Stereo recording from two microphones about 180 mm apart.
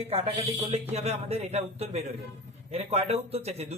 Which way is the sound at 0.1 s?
35° right (ahead or behind).